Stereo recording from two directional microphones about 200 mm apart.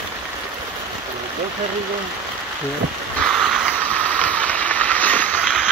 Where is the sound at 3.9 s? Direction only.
5° left (ahead or behind).